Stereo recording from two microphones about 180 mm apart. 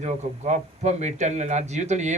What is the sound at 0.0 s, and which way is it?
A man's voice, 40° right (ahead or behind).